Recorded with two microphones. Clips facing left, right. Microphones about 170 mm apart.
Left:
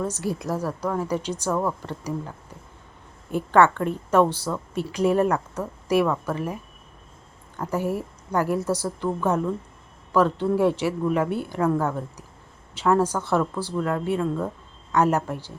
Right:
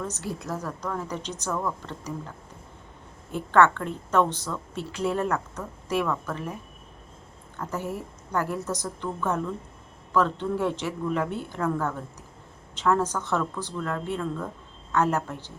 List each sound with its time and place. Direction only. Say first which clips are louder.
0.0 s a woman's voice: left 6 dB; 10° left (ahead or behind)
1.5 s speech: left 4 dB; 30° left (ahead or behind)
1.8 s a woman's voice: left 5 dB; 10° left (ahead or behind)
3.3 s a woman's voice: left 2 dB; 10° left (ahead or behind)
7.7 s a woman's voice: left 7 dB; 10° left (ahead or behind)